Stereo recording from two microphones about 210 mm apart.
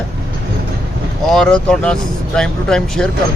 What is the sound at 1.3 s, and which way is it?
Speech, 5° left (ahead or behind).